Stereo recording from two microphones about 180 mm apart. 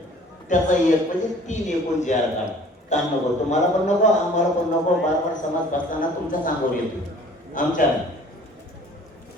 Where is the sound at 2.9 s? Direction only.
40° left (ahead or behind).